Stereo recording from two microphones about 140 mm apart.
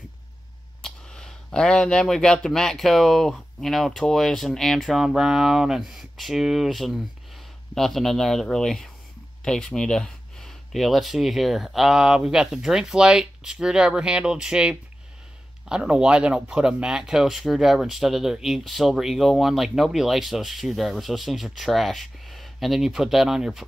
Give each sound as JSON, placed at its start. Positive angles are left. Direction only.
{"t": 0.8, "sound": "speech", "side_deg": 5}